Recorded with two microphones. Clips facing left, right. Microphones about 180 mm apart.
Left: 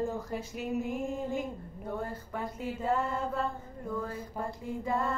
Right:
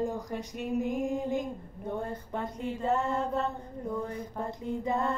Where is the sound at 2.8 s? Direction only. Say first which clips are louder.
Right 2 dB; 25° right (ahead or behind).